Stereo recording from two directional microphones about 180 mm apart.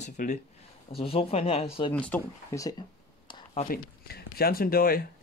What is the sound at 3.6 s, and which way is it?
Speech, 60° left (ahead or behind).